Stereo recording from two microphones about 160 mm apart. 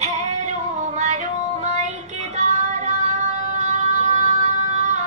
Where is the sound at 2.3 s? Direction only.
45° right (ahead or behind).